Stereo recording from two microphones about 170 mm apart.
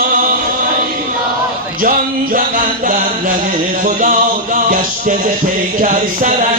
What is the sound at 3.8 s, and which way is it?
Music, 50° right (ahead or behind).